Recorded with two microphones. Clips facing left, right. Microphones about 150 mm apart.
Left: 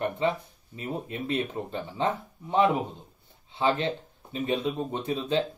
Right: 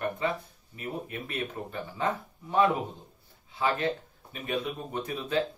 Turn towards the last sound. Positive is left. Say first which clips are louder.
# left 3 dB
turn(degrees=25)  # may be behind; listen again after turning